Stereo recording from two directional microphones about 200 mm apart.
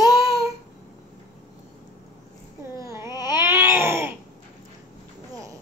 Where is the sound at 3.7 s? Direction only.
10° right (ahead or behind).